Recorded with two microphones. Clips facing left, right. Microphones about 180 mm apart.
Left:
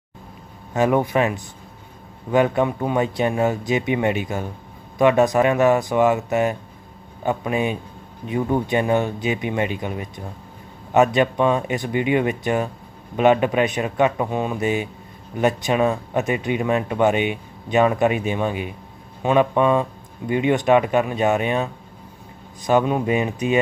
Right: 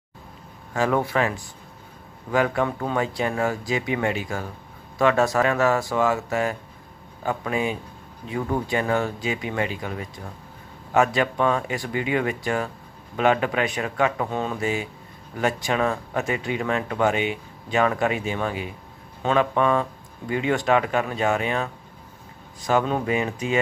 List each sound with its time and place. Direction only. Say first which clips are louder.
0.7 s speech: left 4 dB; 15° left (ahead or behind)